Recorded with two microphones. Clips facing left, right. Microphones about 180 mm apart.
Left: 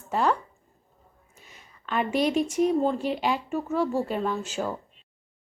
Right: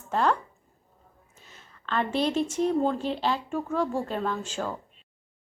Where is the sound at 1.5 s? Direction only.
10° left (ahead or behind).